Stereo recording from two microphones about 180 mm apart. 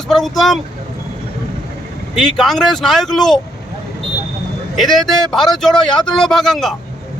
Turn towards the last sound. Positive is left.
turn(degrees=0)  # may be behind; listen again after turning